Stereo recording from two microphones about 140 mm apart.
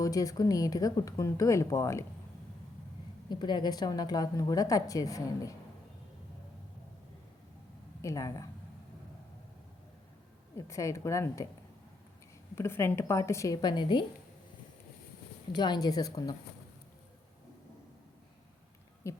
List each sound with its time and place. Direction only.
0.0 s a woman's voice: 25° left (ahead or behind)
3.2 s a woman's voice: 30° left (ahead or behind)
8.0 s a woman's voice: 25° left (ahead or behind)
10.7 s a woman's voice: 20° left (ahead or behind)
12.5 s a woman's voice: 20° left (ahead or behind)
15.5 s a woman's voice: 30° left (ahead or behind)
19.1 s a woman's voice: 20° left (ahead or behind)